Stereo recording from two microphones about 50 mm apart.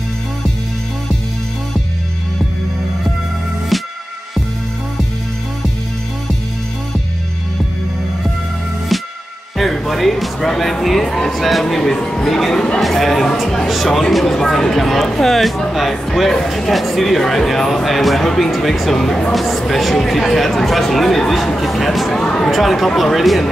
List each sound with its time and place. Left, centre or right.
3.7 s music: centre
9.6 s speech: centre
12.8 s speech: centre
22.2 s speech: centre
22.5 s speech: centre